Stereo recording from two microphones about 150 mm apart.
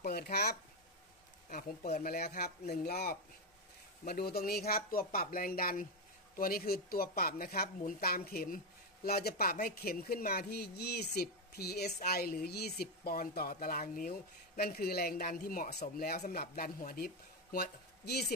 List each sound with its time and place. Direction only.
0.0 s a sound: 90° left
2.0 s a woman's voice: 90° left
16.2 s speech: 75° left (ahead or behind); by 18.2 s 90° left